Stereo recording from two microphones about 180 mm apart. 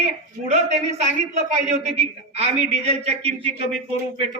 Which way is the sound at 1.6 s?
35° right (ahead or behind).